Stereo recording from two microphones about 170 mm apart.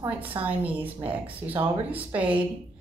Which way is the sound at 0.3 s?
15° right (ahead or behind).